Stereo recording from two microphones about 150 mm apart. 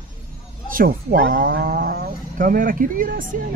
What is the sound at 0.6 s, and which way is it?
Speech, 70° right (ahead or behind).